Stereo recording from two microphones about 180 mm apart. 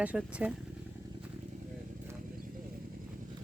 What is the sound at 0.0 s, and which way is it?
Speech, 5° right (ahead or behind).